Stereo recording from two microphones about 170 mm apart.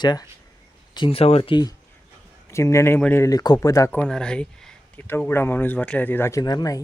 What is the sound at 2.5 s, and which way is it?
Speech, 15° left (ahead or behind).